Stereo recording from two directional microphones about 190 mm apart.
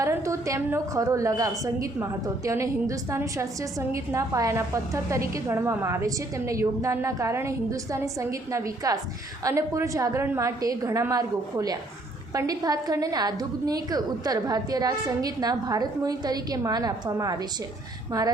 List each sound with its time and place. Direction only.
0.0 s a woman's voice: 15° right (ahead or behind)